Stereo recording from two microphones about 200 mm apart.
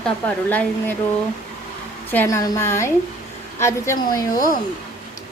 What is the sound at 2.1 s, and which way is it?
Speech, 10° left (ahead or behind).